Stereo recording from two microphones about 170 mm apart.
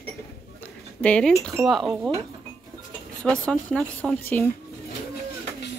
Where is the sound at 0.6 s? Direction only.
5° left (ahead or behind).